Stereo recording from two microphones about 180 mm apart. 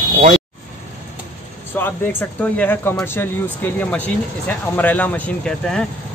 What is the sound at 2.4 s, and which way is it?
Speech, 10° left (ahead or behind).